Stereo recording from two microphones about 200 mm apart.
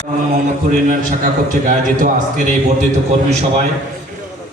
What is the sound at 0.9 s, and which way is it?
A man's voice, 40° right (ahead or behind).